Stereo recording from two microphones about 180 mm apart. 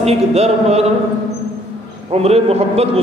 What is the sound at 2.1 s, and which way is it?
Speech, 35° right (ahead or behind).